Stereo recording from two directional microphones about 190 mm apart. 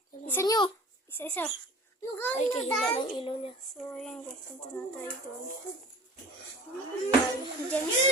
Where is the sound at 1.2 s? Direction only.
10° left (ahead or behind).